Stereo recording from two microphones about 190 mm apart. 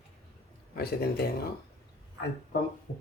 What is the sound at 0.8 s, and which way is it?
Speech, 55° left (ahead or behind).